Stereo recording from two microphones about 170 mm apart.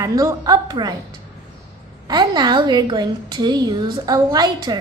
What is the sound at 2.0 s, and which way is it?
A woman's voice, 25° right (ahead or behind).